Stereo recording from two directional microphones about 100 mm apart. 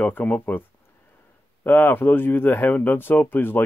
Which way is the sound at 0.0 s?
15° left (ahead or behind).